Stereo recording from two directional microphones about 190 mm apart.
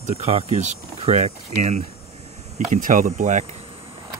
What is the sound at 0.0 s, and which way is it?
Speech, 35° right (ahead or behind).